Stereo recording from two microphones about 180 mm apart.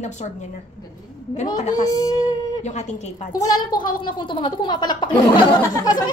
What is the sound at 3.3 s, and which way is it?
A woman's voice, 20° left (ahead or behind).